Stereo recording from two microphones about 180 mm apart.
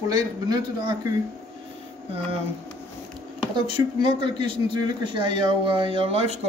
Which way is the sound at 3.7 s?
30° right (ahead or behind).